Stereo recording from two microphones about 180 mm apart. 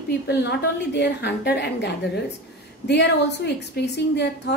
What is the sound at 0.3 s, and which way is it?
Speech, 70° left (ahead or behind).